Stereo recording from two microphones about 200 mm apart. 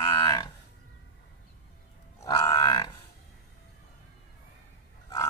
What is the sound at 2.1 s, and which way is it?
Grunt, 15° left (ahead or behind).